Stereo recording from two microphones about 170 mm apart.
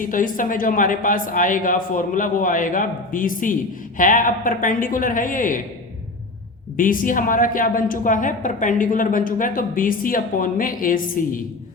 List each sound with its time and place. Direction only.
0.0 s a man's voice: 50° left (ahead or behind)
6.7 s a man's voice: 50° left (ahead or behind)